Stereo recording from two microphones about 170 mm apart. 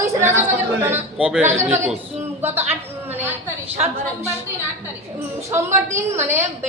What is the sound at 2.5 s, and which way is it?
Speech, 40° right (ahead or behind).